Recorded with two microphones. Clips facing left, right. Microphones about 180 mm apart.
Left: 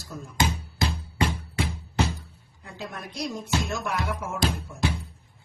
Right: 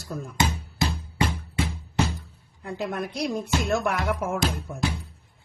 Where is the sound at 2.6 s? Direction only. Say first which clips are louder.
Right 8 dB; 60° right (ahead or behind).